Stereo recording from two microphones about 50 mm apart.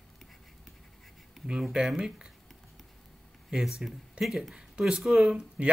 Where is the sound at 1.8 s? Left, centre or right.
Right.